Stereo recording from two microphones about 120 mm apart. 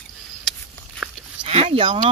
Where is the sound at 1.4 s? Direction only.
55° right (ahead or behind).